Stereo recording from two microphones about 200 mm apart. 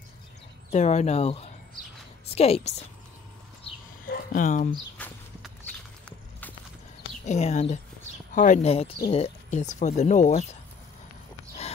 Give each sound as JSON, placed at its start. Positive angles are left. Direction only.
{"t": 0.7, "sound": "speech", "side_deg": 35}
{"t": 4.0, "sound": "a sound", "side_deg": 45}
{"t": 4.9, "sound": "walk", "side_deg": 5}
{"t": 7.2, "sound": "speech", "side_deg": 35}